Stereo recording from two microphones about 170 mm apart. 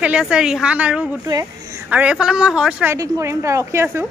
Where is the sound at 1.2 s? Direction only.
20° right (ahead or behind).